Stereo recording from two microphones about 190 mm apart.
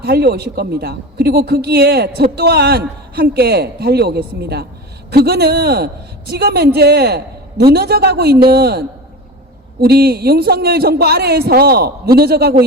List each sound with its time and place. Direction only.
0.0 s speech: 55° right (ahead or behind)
9.8 s speech: 55° right (ahead or behind)